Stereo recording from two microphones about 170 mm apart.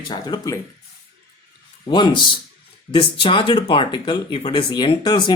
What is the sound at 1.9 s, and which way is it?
Speech, 25° left (ahead or behind).